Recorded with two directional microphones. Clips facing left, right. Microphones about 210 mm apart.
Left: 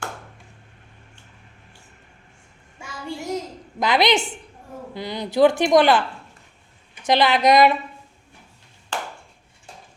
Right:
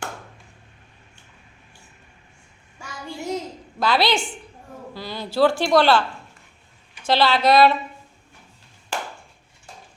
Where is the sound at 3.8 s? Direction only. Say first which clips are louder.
Left 2 dB; 20° left (ahead or behind).